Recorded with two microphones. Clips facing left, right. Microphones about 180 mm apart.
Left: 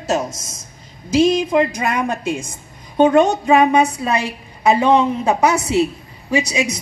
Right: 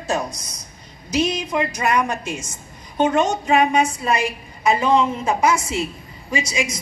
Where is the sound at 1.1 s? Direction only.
90° left.